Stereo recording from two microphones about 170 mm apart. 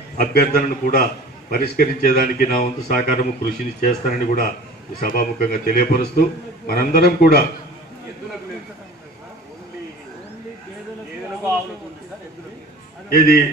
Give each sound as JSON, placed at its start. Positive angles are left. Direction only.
{"t": 0.2, "sound": "a man's voice", "side_deg": 60}